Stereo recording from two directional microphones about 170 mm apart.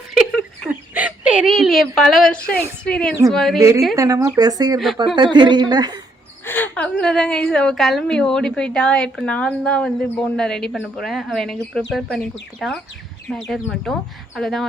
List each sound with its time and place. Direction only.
0.1 s a sound: centre (ahead or behind)
0.7 s a woman's voice: 10° right (ahead or behind)
3.6 s a woman's voice: 20° right (ahead or behind)
6.4 s a woman's voice: 10° left (ahead or behind)